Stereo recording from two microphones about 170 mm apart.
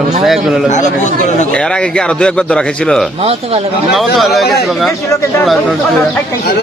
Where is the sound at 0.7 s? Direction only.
45° left (ahead or behind).